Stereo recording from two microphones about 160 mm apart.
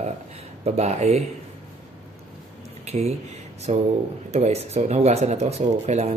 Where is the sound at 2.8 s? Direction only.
40° right (ahead or behind).